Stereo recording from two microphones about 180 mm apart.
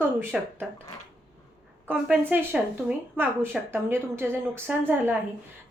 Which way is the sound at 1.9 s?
5° right (ahead or behind).